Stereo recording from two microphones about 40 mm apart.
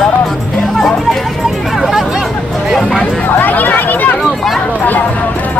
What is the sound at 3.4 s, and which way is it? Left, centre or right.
Speech, left.